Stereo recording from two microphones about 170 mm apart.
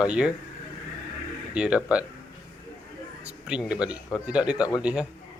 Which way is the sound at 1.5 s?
5° right (ahead or behind).